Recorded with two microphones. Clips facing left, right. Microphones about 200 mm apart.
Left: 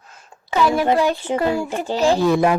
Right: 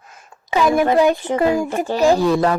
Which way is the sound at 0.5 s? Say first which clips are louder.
Right 2 dB; 15° right (ahead or behind).